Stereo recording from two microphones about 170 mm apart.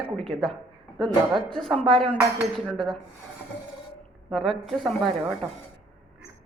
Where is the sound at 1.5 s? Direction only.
5° left (ahead or behind).